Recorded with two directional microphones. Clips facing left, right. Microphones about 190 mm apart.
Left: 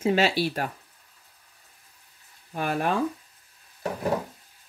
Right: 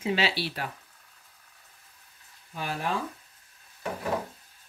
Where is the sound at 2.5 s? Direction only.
55° left (ahead or behind).